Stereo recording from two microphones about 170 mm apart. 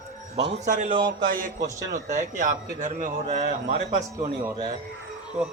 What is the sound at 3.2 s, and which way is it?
A man's voice, 40° right (ahead or behind).